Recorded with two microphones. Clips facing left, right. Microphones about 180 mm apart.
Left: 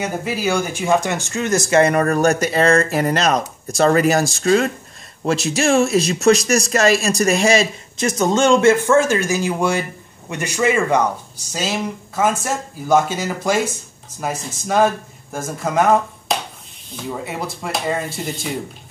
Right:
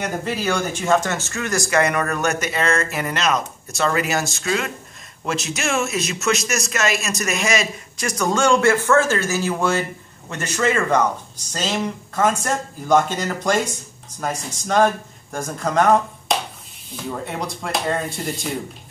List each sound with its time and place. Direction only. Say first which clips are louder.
0.0 s speech: left 2 dB; 10° left (ahead or behind)